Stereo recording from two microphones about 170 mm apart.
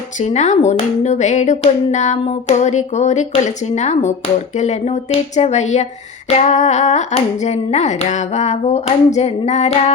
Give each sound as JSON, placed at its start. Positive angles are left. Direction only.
{"t": 0.2, "sound": "speech", "side_deg": 45}